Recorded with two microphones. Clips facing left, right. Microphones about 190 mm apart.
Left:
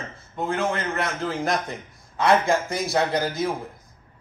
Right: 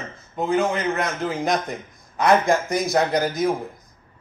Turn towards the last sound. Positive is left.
turn(degrees=-15)  # may be behind; listen again after turning